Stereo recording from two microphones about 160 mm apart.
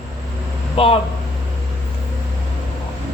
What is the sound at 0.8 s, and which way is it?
Speech, 35° left (ahead or behind).